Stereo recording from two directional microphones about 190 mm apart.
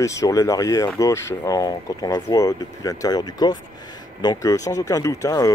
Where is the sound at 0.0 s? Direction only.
15° left (ahead or behind).